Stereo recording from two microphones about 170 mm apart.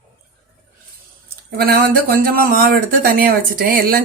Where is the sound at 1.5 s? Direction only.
65° right (ahead or behind).